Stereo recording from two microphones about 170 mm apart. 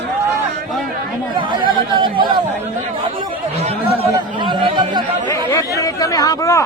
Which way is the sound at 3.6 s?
40° right (ahead or behind).